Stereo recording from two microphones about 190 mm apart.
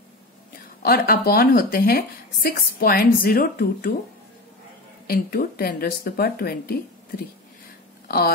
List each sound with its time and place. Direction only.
0.8 s speech: 50° left (ahead or behind)
5.0 s speech: 50° left (ahead or behind)